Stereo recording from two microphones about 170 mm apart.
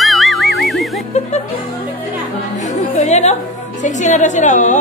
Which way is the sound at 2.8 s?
40° left (ahead or behind).